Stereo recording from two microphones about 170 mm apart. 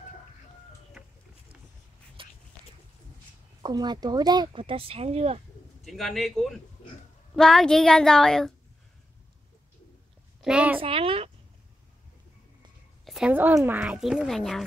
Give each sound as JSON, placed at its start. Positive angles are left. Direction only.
{"t": 2.2, "sound": "a sound", "side_deg": -30}
{"t": 3.6, "sound": "speech", "side_deg": -25}
{"t": 5.9, "sound": "a woman's voice", "side_deg": 0}
{"t": 10.4, "sound": "a child's voice", "side_deg": -5}
{"t": 10.8, "sound": "speech", "side_deg": -35}
{"t": 13.0, "sound": "a sound", "side_deg": 0}
{"t": 13.3, "sound": "a child's voice", "side_deg": -10}